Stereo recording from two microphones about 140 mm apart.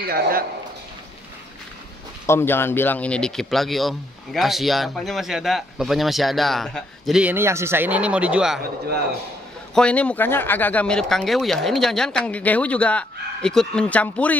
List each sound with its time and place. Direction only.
0.0 s a man's voice: 90° right
2.2 s speech: 15° left (ahead or behind); by 8.5 s 5° right (ahead or behind)
9.8 s speech: 10° left (ahead or behind)